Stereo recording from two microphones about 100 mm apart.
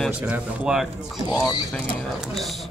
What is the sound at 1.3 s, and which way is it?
Speech, 45° left (ahead or behind).